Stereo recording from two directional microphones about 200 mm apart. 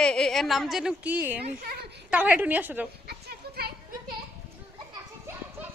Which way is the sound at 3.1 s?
50° right (ahead or behind).